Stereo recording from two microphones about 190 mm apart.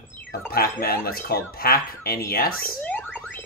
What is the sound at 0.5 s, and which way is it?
Speech, 55° left (ahead or behind).